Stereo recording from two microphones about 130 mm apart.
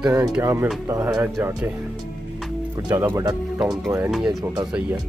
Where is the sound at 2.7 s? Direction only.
25° right (ahead or behind).